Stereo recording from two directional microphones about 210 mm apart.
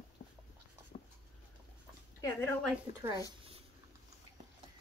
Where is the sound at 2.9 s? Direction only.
35° left (ahead or behind).